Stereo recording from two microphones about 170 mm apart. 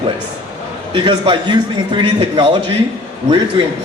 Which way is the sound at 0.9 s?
30° right (ahead or behind).